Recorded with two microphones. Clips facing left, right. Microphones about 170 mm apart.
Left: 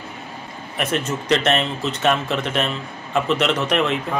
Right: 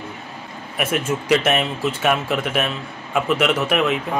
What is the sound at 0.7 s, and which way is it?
Speech, 10° right (ahead or behind).